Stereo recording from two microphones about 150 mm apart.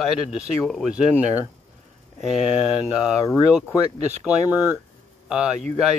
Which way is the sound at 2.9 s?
5° right (ahead or behind).